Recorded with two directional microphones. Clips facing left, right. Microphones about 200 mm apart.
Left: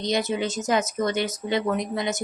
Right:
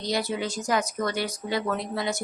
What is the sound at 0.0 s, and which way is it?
Speech, 20° left (ahead or behind).